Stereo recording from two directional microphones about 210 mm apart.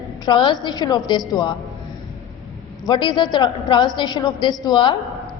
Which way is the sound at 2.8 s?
25° left (ahead or behind).